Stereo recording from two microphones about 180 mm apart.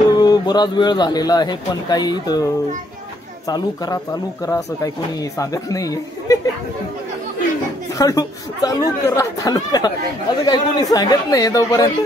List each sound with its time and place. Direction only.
0.1 s speech: 25° left (ahead or behind)
8.0 s speech: 20° left (ahead or behind)